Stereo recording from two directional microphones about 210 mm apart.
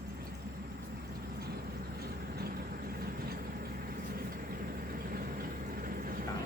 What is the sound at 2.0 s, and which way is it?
Vehicle, 45° right (ahead or behind).